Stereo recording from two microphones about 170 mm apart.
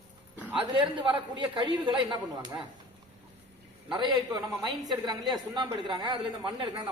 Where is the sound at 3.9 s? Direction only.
25° right (ahead or behind).